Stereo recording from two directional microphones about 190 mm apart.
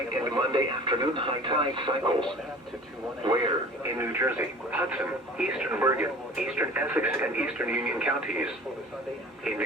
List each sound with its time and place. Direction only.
0.1 s speech: 20° right (ahead or behind)
3.2 s speech: 20° right (ahead or behind)